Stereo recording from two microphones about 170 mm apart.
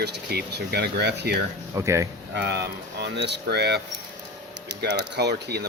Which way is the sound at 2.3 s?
75° right (ahead or behind).